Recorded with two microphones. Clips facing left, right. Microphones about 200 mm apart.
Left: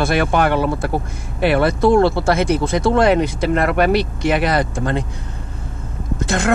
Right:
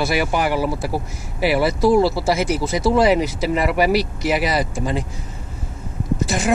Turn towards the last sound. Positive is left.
turn(degrees=0)  # may be behind; listen again after turning